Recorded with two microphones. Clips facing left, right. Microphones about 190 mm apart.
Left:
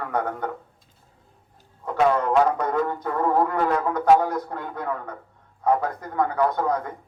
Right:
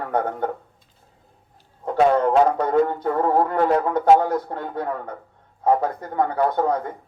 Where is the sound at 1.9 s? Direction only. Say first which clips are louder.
Right 3 dB; 30° right (ahead or behind).